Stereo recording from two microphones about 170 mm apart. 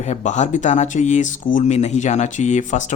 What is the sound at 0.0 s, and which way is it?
Speech, 40° left (ahead or behind).